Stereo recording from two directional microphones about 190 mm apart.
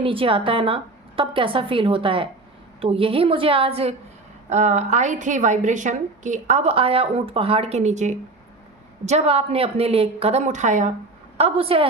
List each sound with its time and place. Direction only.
0.0 s a woman's voice: 30° right (ahead or behind)